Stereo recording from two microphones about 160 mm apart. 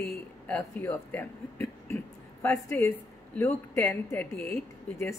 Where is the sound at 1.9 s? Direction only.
15° left (ahead or behind).